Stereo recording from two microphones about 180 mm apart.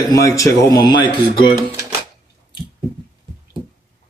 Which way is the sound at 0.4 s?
20° left (ahead or behind).